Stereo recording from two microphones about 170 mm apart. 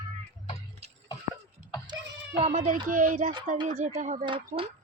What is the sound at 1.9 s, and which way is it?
Cat, 35° right (ahead or behind).